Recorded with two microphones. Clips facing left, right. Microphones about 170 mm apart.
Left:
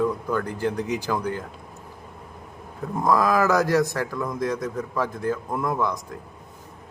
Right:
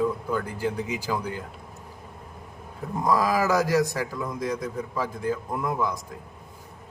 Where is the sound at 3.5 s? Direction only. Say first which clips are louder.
Left 2 dB; 10° right (ahead or behind).